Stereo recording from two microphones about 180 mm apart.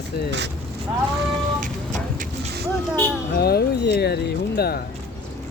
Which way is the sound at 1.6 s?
45° right (ahead or behind).